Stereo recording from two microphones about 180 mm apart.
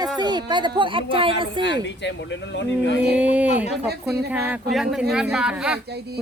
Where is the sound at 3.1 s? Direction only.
10° right (ahead or behind).